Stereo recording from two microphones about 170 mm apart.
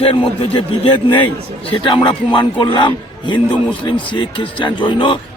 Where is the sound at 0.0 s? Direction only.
30° left (ahead or behind).